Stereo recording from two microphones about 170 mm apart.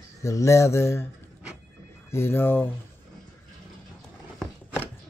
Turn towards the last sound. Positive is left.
turn(degrees=-10)  # may be behind; listen again after turning